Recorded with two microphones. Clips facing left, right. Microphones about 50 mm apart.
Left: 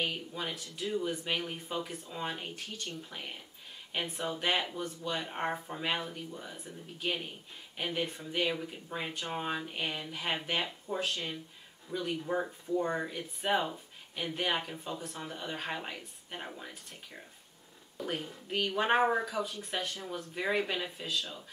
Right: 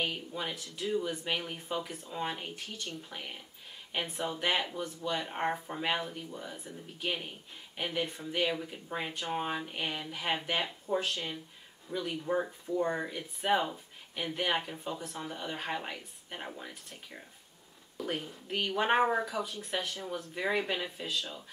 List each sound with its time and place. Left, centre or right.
0.0 s speech: centre
3.9 s speech: centre